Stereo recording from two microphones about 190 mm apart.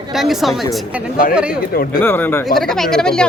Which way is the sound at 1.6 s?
50° left (ahead or behind).